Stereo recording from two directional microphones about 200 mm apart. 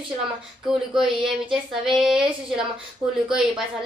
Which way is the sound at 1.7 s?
Centre (ahead or behind).